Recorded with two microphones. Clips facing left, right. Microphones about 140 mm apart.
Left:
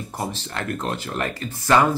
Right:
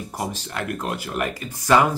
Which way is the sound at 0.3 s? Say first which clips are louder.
Even; 10° right (ahead or behind).